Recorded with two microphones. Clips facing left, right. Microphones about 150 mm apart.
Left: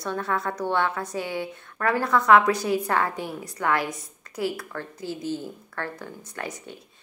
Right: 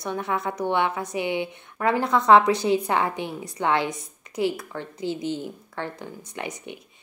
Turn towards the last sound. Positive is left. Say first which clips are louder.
# right 1 dB
turn(degrees=-20)  # may be behind; listen again after turning